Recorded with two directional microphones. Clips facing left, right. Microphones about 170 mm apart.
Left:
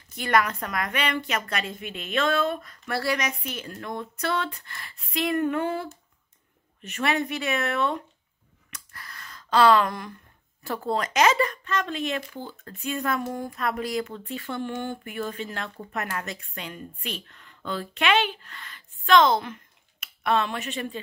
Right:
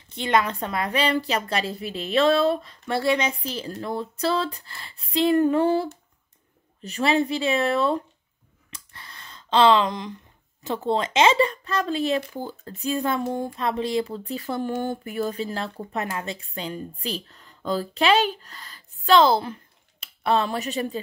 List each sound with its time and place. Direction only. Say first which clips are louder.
0.1 s speech: right 1 dB; 25° right (ahead or behind)
8.6 s a sound: even; 30° right (ahead or behind)
10.6 s speech: right 3 dB; 25° right (ahead or behind); by 21.0 s 40° right (ahead or behind)